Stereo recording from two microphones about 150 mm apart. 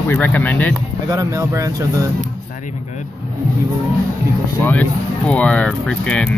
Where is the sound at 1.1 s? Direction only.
20° right (ahead or behind).